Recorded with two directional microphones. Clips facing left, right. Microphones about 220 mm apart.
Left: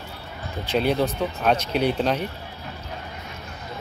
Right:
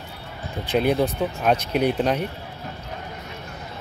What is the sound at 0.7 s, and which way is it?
Speech, 15° right (ahead or behind).